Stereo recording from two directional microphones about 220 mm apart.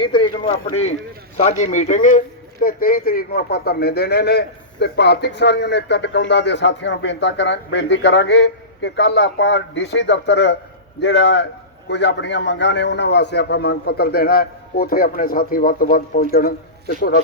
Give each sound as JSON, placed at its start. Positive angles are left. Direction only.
{"t": 0.0, "sound": "a man's voice", "side_deg": 20}